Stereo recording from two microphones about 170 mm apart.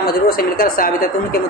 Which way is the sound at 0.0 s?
60° left (ahead or behind).